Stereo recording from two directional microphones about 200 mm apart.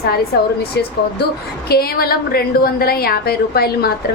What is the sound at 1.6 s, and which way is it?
A woman's voice, 50° left (ahead or behind).